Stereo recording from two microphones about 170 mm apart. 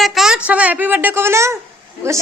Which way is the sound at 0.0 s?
Centre (ahead or behind).